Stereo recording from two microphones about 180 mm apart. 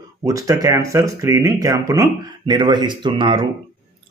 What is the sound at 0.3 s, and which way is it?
Speech, 20° right (ahead or behind).